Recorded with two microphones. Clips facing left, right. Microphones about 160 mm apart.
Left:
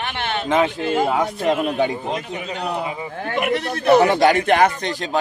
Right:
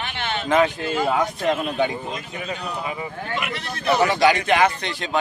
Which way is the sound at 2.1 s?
70° left (ahead or behind).